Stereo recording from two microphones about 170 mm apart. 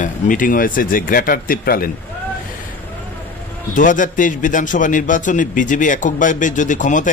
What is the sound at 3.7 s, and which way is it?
Speech, 50° left (ahead or behind).